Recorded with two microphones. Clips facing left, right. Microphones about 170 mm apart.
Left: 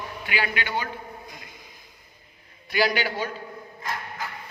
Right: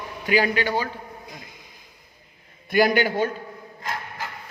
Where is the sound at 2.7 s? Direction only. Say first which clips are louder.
Right 5 dB; 50° right (ahead or behind).